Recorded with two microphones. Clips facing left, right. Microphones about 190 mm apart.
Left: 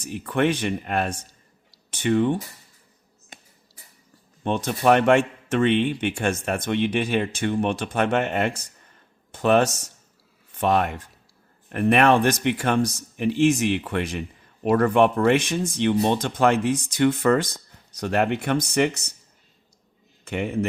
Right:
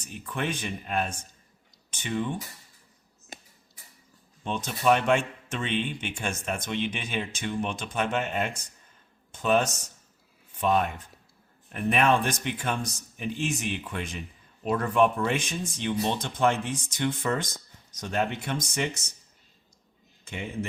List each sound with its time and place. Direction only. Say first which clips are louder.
0.0 s speech: left 10 dB; 65° left (ahead or behind)
4.4 s speech: left 5 dB; 60° left (ahead or behind)
20.2 s a man's voice: left 9 dB; 65° left (ahead or behind)